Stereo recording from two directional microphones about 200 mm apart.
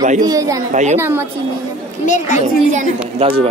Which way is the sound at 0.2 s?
15° right (ahead or behind).